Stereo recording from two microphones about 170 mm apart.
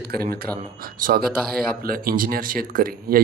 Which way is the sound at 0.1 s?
65° right (ahead or behind).